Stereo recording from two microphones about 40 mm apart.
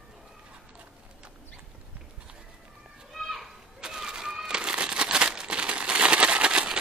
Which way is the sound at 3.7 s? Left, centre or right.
Centre.